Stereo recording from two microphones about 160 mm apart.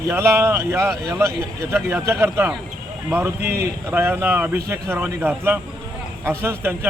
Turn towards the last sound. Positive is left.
turn(degrees=-15)  # may be behind; listen again after turning